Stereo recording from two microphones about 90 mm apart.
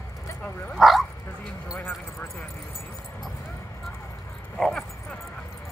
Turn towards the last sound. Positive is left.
turn(degrees=5)  # may be behind; listen again after turning